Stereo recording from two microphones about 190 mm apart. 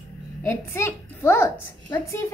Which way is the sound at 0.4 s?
15° left (ahead or behind).